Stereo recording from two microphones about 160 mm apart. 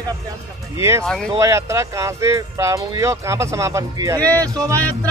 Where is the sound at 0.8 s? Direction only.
20° right (ahead or behind).